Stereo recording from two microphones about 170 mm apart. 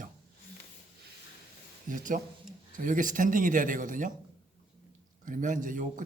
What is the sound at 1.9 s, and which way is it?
A man's voice, 50° right (ahead or behind).